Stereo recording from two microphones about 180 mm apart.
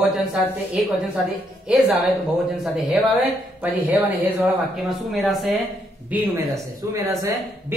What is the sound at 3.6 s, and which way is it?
A man's voice, 10° right (ahead or behind).